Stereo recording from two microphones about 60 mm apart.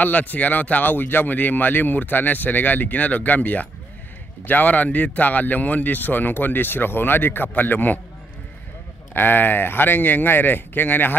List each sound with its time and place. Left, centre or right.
0.0 s speech: left
9.1 s speech: left